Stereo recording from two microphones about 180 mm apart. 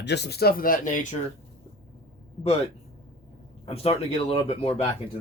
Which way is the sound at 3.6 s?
35° left (ahead or behind).